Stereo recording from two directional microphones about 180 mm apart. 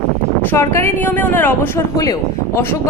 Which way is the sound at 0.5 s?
15° left (ahead or behind).